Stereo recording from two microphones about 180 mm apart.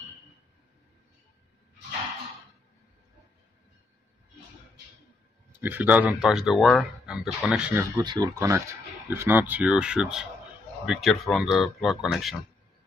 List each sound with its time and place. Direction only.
5.6 s speech: 10° right (ahead or behind)
8.0 s speech: 20° right (ahead or behind); by 12.4 s centre (ahead or behind)